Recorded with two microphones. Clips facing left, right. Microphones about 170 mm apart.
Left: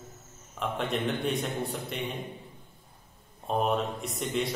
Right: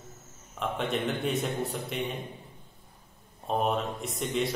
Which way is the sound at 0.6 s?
Centre (ahead or behind).